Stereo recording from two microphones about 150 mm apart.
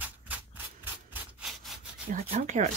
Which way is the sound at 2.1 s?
60° right (ahead or behind).